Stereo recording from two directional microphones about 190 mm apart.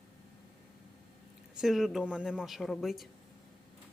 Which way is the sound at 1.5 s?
Centre (ahead or behind).